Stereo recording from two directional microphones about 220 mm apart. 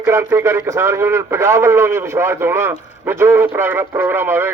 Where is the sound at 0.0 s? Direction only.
10° right (ahead or behind).